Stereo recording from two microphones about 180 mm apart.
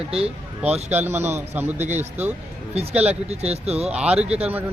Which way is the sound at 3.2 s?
35° right (ahead or behind).